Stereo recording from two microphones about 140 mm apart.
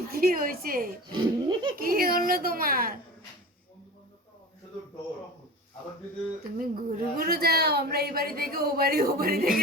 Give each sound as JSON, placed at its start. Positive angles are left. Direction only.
{"t": 0.1, "sound": "speech", "side_deg": -90}
{"t": 1.0, "sound": "speech", "side_deg": -35}
{"t": 1.7, "sound": "speech", "side_deg": -90}
{"t": 6.6, "sound": "speech", "side_deg": -90}